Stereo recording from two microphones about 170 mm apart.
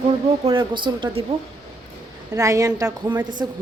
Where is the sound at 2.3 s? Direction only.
20° right (ahead or behind).